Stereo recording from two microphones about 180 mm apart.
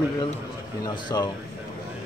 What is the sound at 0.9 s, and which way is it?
Speech, 25° left (ahead or behind).